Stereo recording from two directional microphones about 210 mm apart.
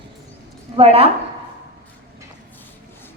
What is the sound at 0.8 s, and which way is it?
Speech, 30° right (ahead or behind).